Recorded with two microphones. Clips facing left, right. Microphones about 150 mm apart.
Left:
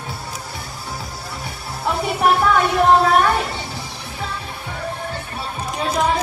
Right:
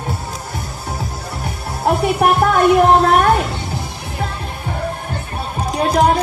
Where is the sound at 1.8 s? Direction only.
55° right (ahead or behind).